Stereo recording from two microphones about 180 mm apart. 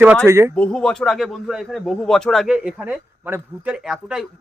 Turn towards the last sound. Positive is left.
turn(degrees=-5)  # may be behind; listen again after turning